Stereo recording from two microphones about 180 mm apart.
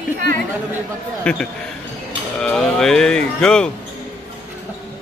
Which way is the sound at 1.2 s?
5° left (ahead or behind).